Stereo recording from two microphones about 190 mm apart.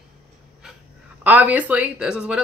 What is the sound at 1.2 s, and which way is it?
Speech, 10° right (ahead or behind).